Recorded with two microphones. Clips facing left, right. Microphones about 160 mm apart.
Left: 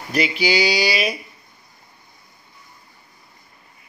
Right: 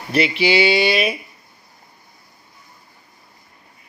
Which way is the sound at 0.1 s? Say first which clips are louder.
Right 3 dB; centre (ahead or behind).